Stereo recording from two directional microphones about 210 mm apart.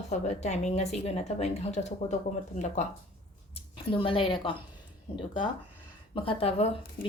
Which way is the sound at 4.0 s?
25° left (ahead or behind).